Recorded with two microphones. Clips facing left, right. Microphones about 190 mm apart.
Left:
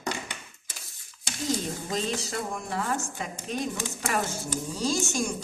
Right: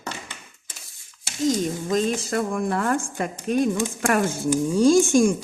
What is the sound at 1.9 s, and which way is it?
Speech, 55° right (ahead or behind).